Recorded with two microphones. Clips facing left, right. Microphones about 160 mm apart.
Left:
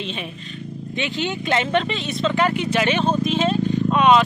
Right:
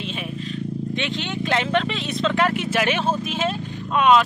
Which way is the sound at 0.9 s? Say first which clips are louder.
Left 6 dB; 5° left (ahead or behind).